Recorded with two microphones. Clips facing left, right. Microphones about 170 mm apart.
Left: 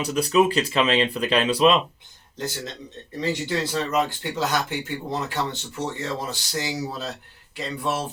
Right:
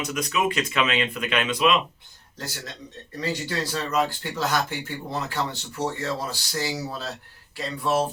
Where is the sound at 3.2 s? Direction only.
20° left (ahead or behind).